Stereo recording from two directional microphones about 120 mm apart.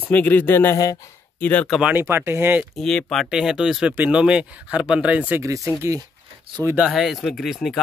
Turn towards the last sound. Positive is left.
turn(degrees=0)  # may be behind; listen again after turning